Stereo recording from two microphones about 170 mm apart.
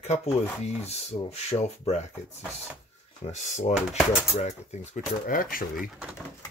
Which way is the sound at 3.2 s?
45° left (ahead or behind).